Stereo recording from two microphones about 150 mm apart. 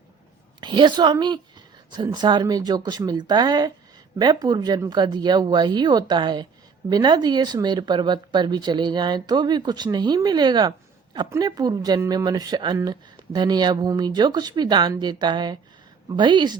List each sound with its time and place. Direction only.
0.6 s speech: 30° right (ahead or behind)